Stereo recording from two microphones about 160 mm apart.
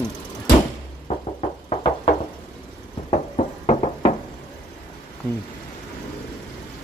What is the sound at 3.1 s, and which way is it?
Knock, 40° left (ahead or behind).